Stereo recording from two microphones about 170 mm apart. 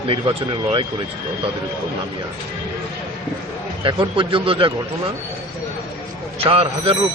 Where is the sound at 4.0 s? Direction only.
30° right (ahead or behind).